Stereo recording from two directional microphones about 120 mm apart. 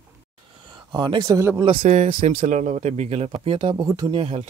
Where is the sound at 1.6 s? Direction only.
45° right (ahead or behind).